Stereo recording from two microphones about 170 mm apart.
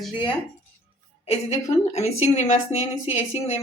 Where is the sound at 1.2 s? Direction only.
40° left (ahead or behind).